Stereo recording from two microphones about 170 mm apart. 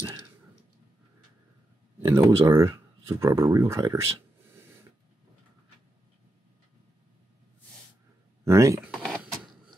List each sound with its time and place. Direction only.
2.0 s speech: 15° right (ahead or behind)
8.5 s speech: 15° right (ahead or behind)
8.9 s a sound: 5° left (ahead or behind)